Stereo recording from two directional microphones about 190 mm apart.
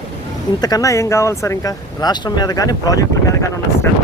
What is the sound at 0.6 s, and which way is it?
Speech, 20° left (ahead or behind).